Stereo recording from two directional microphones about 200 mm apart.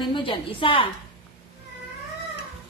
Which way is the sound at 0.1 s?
25° left (ahead or behind).